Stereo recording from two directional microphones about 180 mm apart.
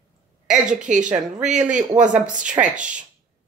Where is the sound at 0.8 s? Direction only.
45° right (ahead or behind).